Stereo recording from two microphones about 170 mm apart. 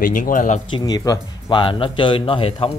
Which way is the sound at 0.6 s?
25° left (ahead or behind).